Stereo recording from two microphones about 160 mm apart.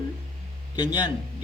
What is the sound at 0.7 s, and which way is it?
Speech, 25° left (ahead or behind).